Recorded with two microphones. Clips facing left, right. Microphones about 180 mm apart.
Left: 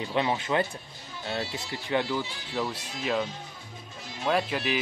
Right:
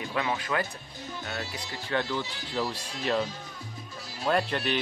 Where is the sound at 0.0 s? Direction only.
25° left (ahead or behind); by 3.3 s 5° left (ahead or behind).